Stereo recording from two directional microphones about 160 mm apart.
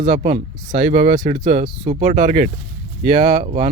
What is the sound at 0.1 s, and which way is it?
Speech, 45° right (ahead or behind).